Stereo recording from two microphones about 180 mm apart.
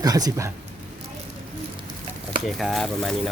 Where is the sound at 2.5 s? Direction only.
Centre (ahead or behind).